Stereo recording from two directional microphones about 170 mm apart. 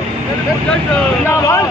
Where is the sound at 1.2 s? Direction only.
20° left (ahead or behind).